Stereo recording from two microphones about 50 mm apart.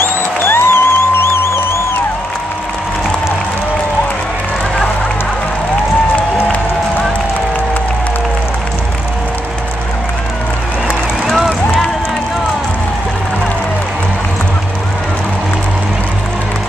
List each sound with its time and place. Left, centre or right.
0.0 s music: left
6.1 s applause: left
11.2 s a sound: centre